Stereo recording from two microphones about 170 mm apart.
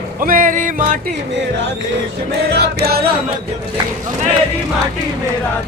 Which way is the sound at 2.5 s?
75° right (ahead or behind).